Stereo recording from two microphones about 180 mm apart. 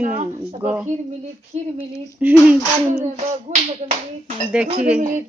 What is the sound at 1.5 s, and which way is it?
Speech, 40° right (ahead or behind).